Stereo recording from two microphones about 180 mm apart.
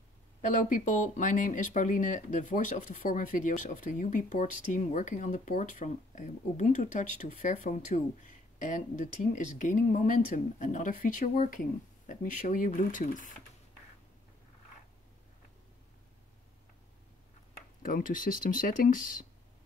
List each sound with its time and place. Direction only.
0.4 s speech: 45° left (ahead or behind)
17.8 s speech: 50° left (ahead or behind)